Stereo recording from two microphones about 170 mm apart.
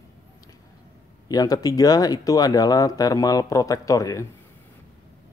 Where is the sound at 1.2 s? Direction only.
20° left (ahead or behind).